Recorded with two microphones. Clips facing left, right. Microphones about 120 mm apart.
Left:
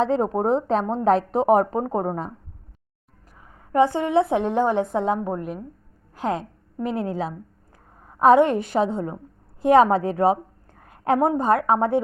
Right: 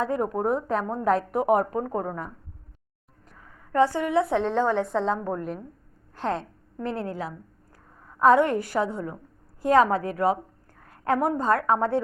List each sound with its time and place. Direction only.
0.0 s speech: 25° left (ahead or behind)
3.7 s a woman's voice: 15° left (ahead or behind)